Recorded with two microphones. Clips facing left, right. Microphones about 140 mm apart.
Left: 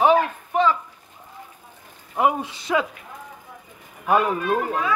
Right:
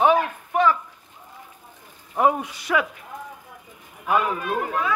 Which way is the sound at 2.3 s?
25° left (ahead or behind).